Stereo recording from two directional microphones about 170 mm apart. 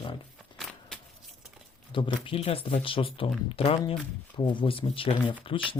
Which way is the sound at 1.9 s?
30° left (ahead or behind).